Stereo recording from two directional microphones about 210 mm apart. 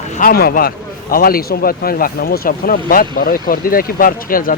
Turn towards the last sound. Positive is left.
turn(degrees=40)  # may be behind; listen again after turning